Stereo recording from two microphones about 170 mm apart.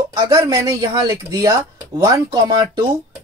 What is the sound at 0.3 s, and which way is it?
Speech, 20° right (ahead or behind).